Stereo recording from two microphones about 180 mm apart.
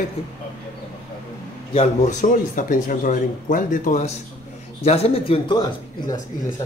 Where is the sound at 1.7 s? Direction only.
40° left (ahead or behind).